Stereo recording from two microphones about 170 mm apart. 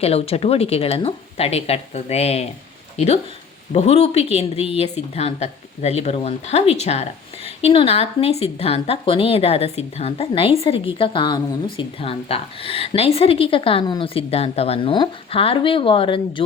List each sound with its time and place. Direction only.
0.0 s a woman's voice: 35° left (ahead or behind)